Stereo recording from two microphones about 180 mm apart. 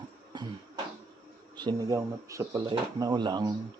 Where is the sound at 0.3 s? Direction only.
25° right (ahead or behind).